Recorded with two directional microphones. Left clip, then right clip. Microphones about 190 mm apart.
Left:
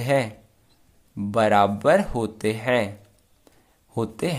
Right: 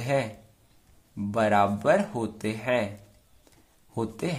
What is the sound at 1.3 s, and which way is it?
Speech, 30° left (ahead or behind).